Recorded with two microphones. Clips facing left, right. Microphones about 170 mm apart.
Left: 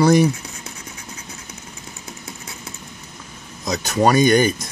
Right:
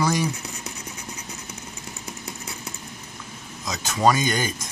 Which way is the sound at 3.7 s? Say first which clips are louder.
Left 4 dB; 65° left (ahead or behind).